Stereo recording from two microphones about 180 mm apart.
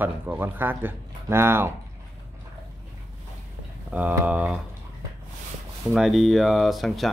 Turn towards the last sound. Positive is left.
turn(degrees=0)  # may be behind; listen again after turning